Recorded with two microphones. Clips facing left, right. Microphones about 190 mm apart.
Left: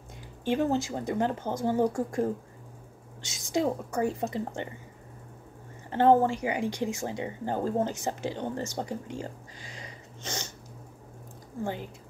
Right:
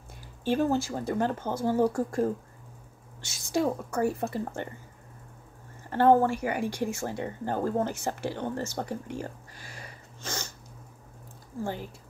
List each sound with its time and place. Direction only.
0.5 s speech: 20° left (ahead or behind)
5.9 s speech: 20° left (ahead or behind)
9.2 s a sound: 20° left (ahead or behind)
11.6 s speech: 20° left (ahead or behind)